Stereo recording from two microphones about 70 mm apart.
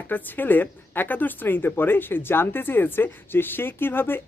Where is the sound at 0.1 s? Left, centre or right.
Left.